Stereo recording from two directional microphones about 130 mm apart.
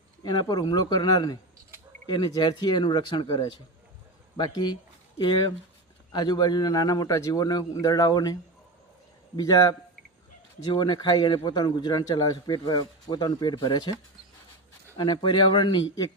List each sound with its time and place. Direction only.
0.2 s a man's voice: 35° left (ahead or behind)
14.9 s a man's voice: 35° left (ahead or behind)